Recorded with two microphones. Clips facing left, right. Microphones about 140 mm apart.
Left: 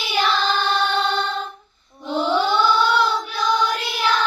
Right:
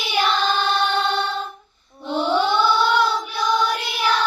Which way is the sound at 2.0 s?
5° right (ahead or behind).